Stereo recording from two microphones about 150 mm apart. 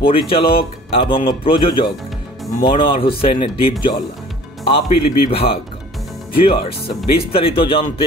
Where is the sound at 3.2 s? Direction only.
40° left (ahead or behind).